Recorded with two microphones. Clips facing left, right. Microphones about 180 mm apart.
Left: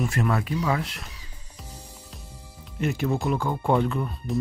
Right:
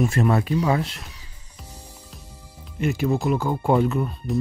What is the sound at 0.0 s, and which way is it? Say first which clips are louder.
Speech: right 5 dB; 25° right (ahead or behind).